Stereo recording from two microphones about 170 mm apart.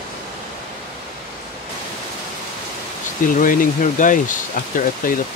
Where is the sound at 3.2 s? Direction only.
55° left (ahead or behind).